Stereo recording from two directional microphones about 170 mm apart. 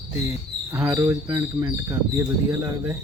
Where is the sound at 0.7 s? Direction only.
15° right (ahead or behind).